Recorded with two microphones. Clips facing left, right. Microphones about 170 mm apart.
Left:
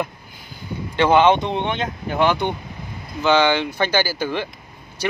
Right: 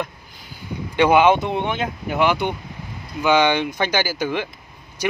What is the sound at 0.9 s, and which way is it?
Speech, 10° right (ahead or behind).